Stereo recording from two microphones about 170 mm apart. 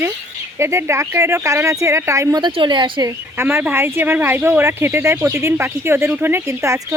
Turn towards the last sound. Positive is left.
turn(degrees=-15)  # may be behind; listen again after turning